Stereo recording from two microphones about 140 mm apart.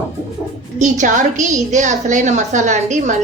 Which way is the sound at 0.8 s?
65° right (ahead or behind).